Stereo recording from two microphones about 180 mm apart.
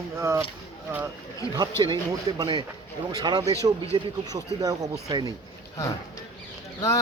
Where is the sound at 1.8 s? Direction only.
25° right (ahead or behind).